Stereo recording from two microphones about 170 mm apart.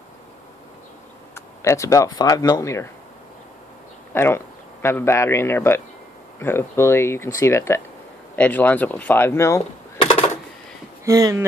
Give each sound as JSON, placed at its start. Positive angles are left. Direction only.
{"t": 1.3, "sound": "speech", "side_deg": 15}
{"t": 4.1, "sound": "speech", "side_deg": 15}
{"t": 11.1, "sound": "speech", "side_deg": -20}